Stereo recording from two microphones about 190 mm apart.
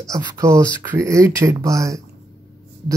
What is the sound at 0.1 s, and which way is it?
Speech, 15° right (ahead or behind).